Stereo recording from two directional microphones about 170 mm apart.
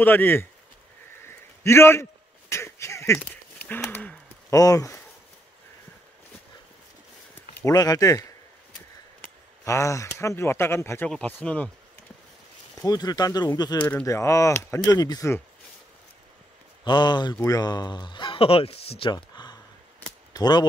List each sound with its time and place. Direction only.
0.0 s speech: 10° left (ahead or behind)
1.2 s a sound: 15° left (ahead or behind)
4.6 s speech: 20° left (ahead or behind)
7.6 s speech: 20° left (ahead or behind)
12.8 s speech: 20° left (ahead or behind)
13.7 s speech: 10° left (ahead or behind)
16.8 s speech: 25° left (ahead or behind)